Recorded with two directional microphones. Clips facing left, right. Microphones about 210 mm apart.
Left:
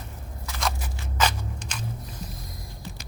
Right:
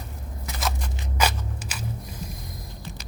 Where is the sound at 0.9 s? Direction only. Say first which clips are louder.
Right 1 dB; 15° right (ahead or behind).